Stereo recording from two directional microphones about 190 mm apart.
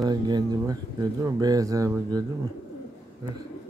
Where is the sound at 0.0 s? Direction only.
20° right (ahead or behind).